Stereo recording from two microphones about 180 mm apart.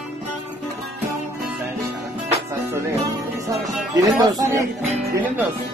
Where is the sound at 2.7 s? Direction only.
15° right (ahead or behind).